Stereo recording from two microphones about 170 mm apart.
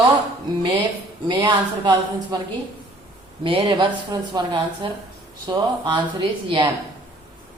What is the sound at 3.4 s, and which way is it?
A woman's voice, 30° right (ahead or behind).